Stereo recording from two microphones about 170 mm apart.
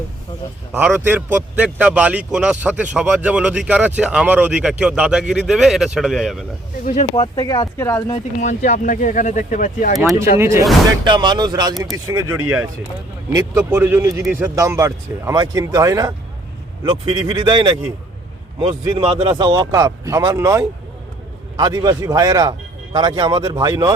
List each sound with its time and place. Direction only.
0.7 s a man's voice: 10° right (ahead or behind)
6.8 s speech: 45° left (ahead or behind)
7.2 s speech: 20° left (ahead or behind)
8.4 s speech: 45° left (ahead or behind)
10.3 s a man's voice: 15° right (ahead or behind)
11.0 s a man's voice: 25° right (ahead or behind)
18.9 s speech: 30° right (ahead or behind)